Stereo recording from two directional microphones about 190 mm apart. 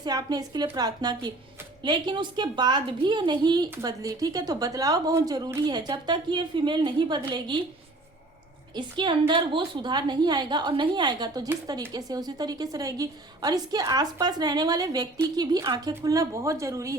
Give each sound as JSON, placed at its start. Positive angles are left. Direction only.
{"t": 0.0, "sound": "a woman's voice", "side_deg": -20}
{"t": 8.7, "sound": "a woman's voice", "side_deg": -25}